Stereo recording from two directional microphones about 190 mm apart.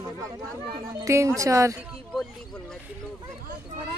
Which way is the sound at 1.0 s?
15° right (ahead or behind).